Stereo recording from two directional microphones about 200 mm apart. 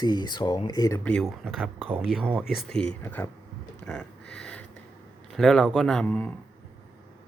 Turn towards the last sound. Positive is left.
turn(degrees=5)  # may be behind; listen again after turning